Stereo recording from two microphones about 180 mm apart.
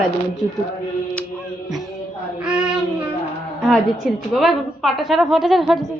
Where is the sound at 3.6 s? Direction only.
Centre (ahead or behind).